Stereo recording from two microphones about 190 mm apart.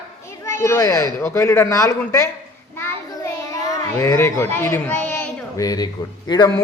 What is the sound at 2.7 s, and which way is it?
Child singing, 15° left (ahead or behind).